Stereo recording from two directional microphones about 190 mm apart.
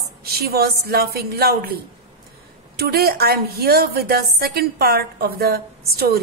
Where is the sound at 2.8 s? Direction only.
55° right (ahead or behind).